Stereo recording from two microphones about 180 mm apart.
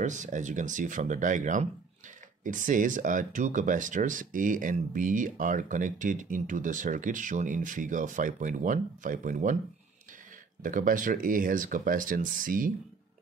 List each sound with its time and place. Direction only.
0.0 s speech: 45° right (ahead or behind)
10.6 s speech: 50° right (ahead or behind)